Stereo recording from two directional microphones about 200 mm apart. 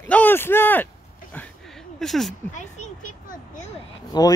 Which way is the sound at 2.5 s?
40° left (ahead or behind).